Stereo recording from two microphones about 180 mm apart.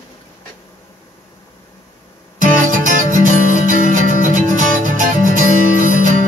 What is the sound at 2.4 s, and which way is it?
Music, 45° right (ahead or behind).